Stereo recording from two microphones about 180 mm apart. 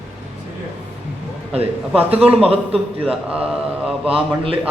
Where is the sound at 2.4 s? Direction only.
35° right (ahead or behind).